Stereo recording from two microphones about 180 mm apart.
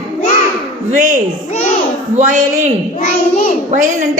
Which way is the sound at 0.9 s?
45° right (ahead or behind).